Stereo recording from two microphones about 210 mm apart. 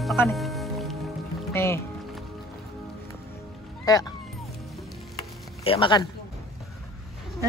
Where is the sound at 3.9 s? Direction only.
15° left (ahead or behind).